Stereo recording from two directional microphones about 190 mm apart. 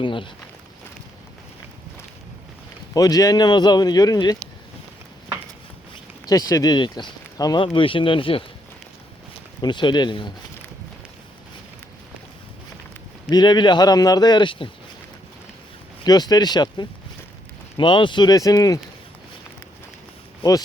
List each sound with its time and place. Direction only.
0.0 s speech: 25° left (ahead or behind)
2.9 s speech: 20° left (ahead or behind)
6.2 s speech: 20° left (ahead or behind)
9.6 s speech: 25° left (ahead or behind)
13.3 s speech: 25° left (ahead or behind)
16.0 s speech: 20° left (ahead or behind)
20.4 s speech: 25° left (ahead or behind)